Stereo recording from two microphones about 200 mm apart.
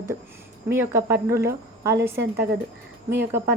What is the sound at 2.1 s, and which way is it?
Speech, 55° right (ahead or behind).